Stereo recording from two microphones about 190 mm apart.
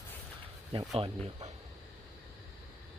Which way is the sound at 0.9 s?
30° right (ahead or behind).